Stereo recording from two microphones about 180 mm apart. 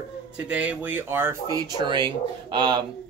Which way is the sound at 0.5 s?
5° right (ahead or behind).